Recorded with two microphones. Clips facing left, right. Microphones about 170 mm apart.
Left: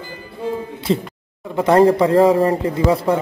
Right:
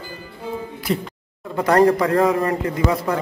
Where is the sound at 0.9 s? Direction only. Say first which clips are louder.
Left 4 dB; 25° left (ahead or behind).